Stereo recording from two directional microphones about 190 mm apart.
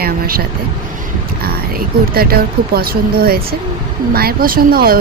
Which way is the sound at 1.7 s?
55° right (ahead or behind).